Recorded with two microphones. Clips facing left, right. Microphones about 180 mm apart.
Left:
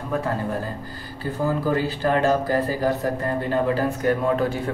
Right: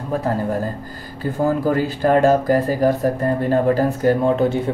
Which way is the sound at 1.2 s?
50° right (ahead or behind).